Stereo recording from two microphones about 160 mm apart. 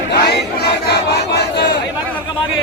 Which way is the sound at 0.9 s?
90° left.